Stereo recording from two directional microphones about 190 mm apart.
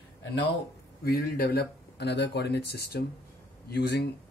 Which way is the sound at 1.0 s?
50° left (ahead or behind).